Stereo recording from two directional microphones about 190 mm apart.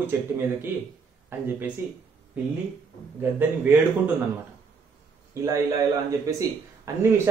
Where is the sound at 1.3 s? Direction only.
10° right (ahead or behind).